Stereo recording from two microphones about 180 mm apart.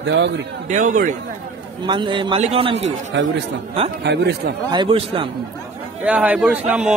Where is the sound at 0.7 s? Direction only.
45° right (ahead or behind).